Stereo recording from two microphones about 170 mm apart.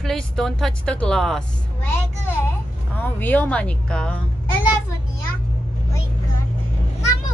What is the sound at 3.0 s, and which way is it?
Speech, 10° left (ahead or behind).